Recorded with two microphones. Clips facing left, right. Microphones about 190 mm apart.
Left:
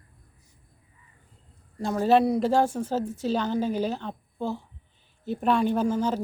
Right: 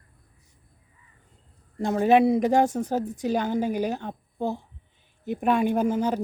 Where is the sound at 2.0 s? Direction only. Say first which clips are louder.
Right 2 dB; 20° right (ahead or behind).